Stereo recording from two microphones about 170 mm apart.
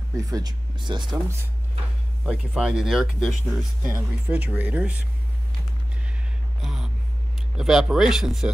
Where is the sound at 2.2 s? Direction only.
5° right (ahead or behind).